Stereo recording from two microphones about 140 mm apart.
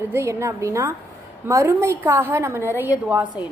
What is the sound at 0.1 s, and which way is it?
A woman's voice, 20° right (ahead or behind).